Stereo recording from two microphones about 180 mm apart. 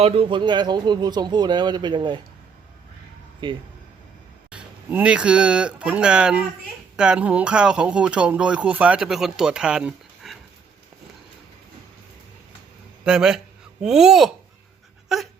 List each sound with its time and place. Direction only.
0.0 s speech: 30° right (ahead or behind)
3.4 s speech: 25° right (ahead or behind)
4.5 s speech: 5° right (ahead or behind)
13.1 s speech: 5° right (ahead or behind)